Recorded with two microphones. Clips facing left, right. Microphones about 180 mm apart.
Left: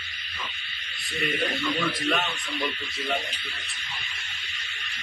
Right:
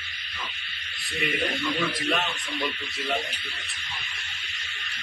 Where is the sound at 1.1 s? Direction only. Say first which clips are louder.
Even; centre (ahead or behind).